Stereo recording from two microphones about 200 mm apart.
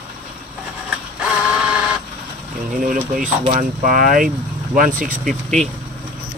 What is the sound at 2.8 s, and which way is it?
Speech, 40° right (ahead or behind).